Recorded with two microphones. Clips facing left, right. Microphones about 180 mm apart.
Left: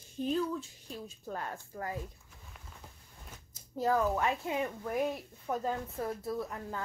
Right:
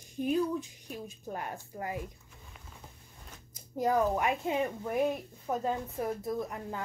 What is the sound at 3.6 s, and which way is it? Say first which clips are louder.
Speech: right 2 dB; 15° right (ahead or behind).